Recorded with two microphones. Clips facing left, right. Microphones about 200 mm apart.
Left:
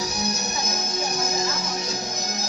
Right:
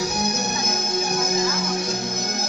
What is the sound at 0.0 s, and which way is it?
Music, 55° right (ahead or behind).